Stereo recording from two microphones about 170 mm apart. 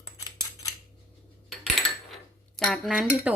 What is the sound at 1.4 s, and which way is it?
Cutlery, centre (ahead or behind).